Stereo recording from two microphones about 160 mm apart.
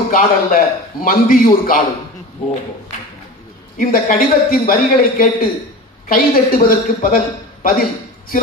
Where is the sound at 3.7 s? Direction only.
60° left (ahead or behind).